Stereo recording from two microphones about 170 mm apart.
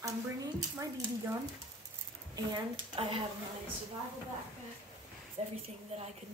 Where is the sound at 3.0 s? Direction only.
30° right (ahead or behind).